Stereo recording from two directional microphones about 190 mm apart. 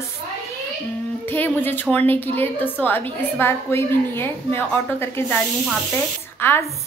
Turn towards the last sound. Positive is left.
turn(degrees=10)  # may be behind; listen again after turning